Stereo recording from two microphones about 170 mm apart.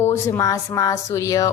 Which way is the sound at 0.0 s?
15° left (ahead or behind).